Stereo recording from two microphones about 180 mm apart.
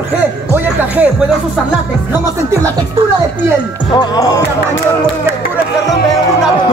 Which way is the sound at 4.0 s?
20° left (ahead or behind).